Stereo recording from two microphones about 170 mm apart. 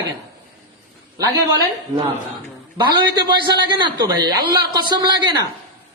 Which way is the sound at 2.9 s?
25° right (ahead or behind).